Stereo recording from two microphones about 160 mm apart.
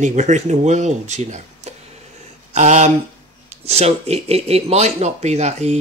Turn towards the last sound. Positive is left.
turn(degrees=-45)  # may be behind; listen again after turning